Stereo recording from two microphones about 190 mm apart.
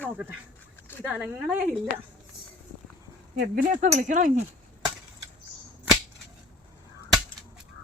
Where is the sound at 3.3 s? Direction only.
55° right (ahead or behind).